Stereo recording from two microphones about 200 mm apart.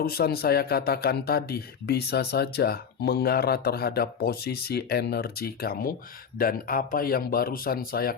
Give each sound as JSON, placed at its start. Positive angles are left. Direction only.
{"t": 0.0, "sound": "a man's voice", "side_deg": 50}